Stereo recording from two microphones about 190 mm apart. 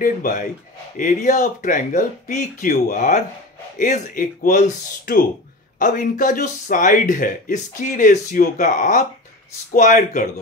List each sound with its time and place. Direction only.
0.0 s speech: 45° left (ahead or behind)